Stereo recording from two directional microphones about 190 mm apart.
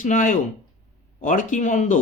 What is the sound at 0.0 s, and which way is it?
A man's voice, 40° left (ahead or behind).